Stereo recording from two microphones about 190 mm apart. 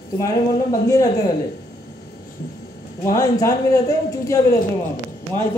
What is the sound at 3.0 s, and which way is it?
A man's voice, 15° left (ahead or behind).